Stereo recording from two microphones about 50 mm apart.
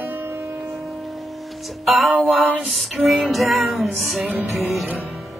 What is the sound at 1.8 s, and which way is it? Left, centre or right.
Music, centre.